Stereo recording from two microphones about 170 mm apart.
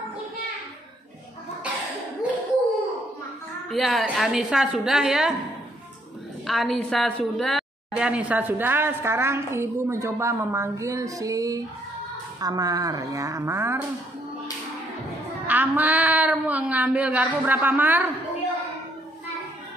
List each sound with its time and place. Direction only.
3.7 s a woman's voice: centre (ahead or behind)
6.4 s a woman's voice: centre (ahead or behind); by 13.8 s 15° right (ahead or behind)
15.4 s a woman's voice: 10° right (ahead or behind)